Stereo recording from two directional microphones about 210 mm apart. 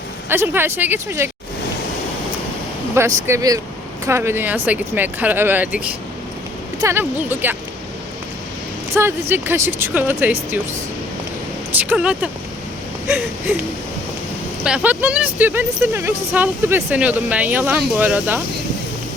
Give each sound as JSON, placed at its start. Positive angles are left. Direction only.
{"t": 0.3, "sound": "speech", "side_deg": -10}
{"t": 3.2, "sound": "speech", "side_deg": -15}
{"t": 8.9, "sound": "speech", "side_deg": -10}
{"t": 11.8, "sound": "speech", "side_deg": -5}
{"t": 14.6, "sound": "speech", "side_deg": -5}